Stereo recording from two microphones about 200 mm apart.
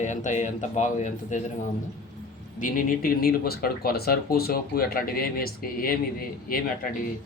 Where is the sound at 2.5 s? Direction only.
45° left (ahead or behind).